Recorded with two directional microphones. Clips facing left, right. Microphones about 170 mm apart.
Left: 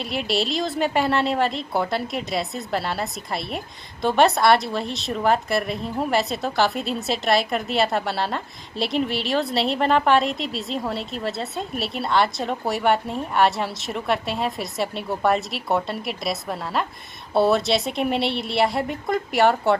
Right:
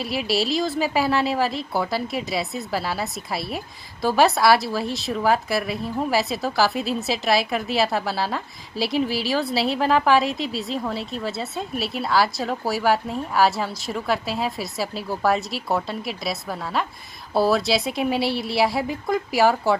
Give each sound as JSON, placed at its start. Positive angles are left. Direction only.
{"t": 0.0, "sound": "a woman's voice", "side_deg": 0}